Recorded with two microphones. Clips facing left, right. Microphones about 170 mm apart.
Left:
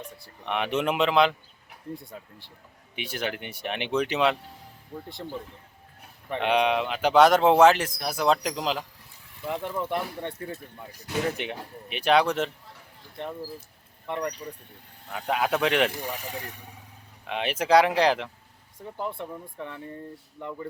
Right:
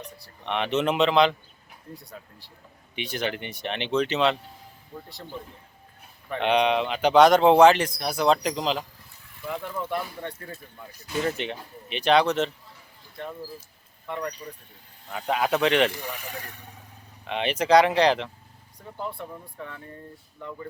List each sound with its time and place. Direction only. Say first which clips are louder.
0.4 s speech: right 1 dB; 5° left (ahead or behind)
2.9 s speech: right 2 dB; 5° left (ahead or behind)
6.4 s speech: right 2 dB; 5° left (ahead or behind)
9.4 s speech: left 2 dB; 20° left (ahead or behind)
11.1 s speech: right 1 dB; 10° left (ahead or behind)
14.1 s speech: left 2 dB; 20° left (ahead or behind)
15.3 s speech: right 2 dB; 5° left (ahead or behind)
15.9 s speech: left 2 dB; 40° left (ahead or behind)
16.3 s speech: left 2 dB; 20° left (ahead or behind)
17.2 s speech: right 2 dB; 5° left (ahead or behind)
19.1 s speech: left 2 dB; 20° left (ahead or behind)